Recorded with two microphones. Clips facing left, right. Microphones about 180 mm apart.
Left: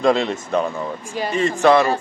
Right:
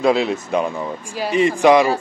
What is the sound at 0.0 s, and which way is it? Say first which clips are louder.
Speech: right 1 dB; 5° right (ahead or behind).